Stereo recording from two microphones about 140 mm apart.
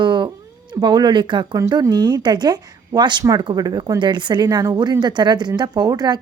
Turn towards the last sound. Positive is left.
turn(degrees=-30)  # may be behind; listen again after turning